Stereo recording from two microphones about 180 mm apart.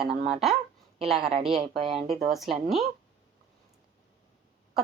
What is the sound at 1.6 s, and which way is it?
Speech, 35° right (ahead or behind).